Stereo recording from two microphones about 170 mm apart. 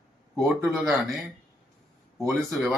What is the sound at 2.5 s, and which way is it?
Speech, centre (ahead or behind).